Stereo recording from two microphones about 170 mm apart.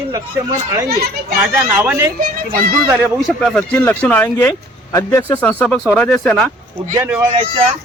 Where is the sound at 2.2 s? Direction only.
55° right (ahead or behind).